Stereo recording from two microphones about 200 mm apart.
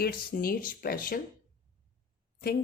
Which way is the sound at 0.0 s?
45° left (ahead or behind).